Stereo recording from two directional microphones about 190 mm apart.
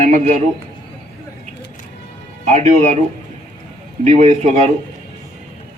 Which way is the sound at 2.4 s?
35° right (ahead or behind).